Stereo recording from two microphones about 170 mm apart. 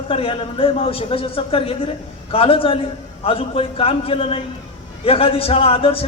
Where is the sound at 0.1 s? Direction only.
30° left (ahead or behind).